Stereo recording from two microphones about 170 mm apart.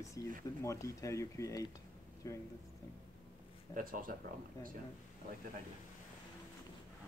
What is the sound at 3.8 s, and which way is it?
Speech, 55° right (ahead or behind).